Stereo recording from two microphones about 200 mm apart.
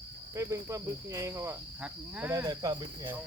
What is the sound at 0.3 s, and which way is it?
Cricket, 15° right (ahead or behind).